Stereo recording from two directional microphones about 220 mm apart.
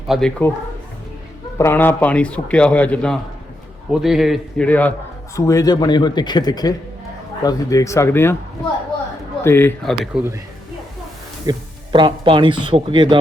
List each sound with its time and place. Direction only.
0.1 s a man's voice: 5° left (ahead or behind)
1.5 s a man's voice: 10° left (ahead or behind)
9.4 s a man's voice: 10° left (ahead or behind)
9.9 s a man's voice: 5° right (ahead or behind)
11.4 s speech: 20° right (ahead or behind)